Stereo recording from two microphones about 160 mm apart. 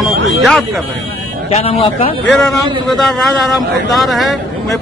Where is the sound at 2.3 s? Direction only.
Centre (ahead or behind).